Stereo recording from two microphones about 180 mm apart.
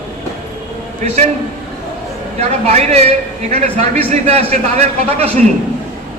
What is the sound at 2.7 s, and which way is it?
A man's voice, 35° right (ahead or behind).